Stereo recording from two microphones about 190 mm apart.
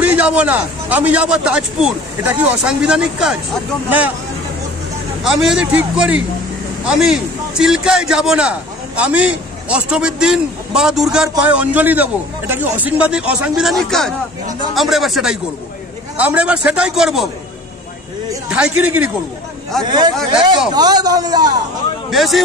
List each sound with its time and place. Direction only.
0.0 s a man's voice: 5° right (ahead or behind)
5.2 s a man's voice: centre (ahead or behind)
18.5 s a man's voice: 5° right (ahead or behind)
19.8 s a man's voice: 20° right (ahead or behind)
22.1 s a man's voice: centre (ahead or behind)